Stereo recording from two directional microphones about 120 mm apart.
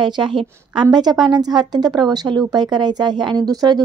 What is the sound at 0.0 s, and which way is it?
Speech, 40° right (ahead or behind).